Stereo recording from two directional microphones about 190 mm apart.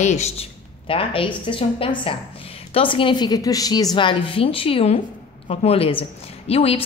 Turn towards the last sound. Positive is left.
turn(degrees=30)  # may be behind; listen again after turning